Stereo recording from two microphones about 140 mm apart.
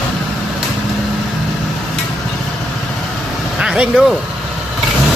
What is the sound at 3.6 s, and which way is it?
Vehicle, 5° right (ahead or behind).